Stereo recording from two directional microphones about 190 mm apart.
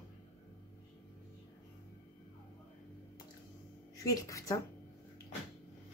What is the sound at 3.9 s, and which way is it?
Speech, 15° left (ahead or behind).